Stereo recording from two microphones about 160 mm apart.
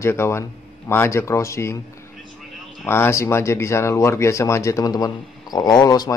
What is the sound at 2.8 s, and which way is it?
Speech, 15° left (ahead or behind).